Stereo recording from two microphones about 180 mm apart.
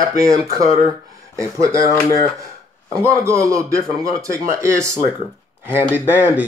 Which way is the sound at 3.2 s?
15° right (ahead or behind).